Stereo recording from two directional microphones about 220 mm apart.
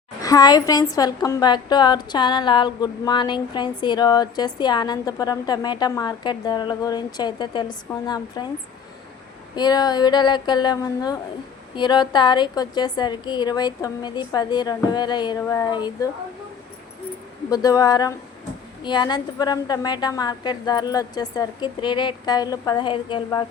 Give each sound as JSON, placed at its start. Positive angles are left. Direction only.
{"t": 0.2, "sound": "a woman's voice", "side_deg": 15}
{"t": 9.6, "sound": "a woman's voice", "side_deg": 20}
{"t": 17.5, "sound": "a woman's voice", "side_deg": 15}